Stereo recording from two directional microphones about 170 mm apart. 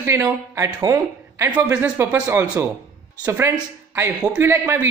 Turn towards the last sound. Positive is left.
turn(degrees=-10)  # may be behind; listen again after turning